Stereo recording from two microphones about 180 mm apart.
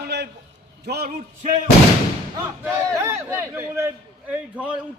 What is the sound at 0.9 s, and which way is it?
Speech, 60° right (ahead or behind).